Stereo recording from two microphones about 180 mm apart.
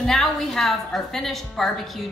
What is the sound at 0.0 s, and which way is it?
A woman's voice, centre (ahead or behind).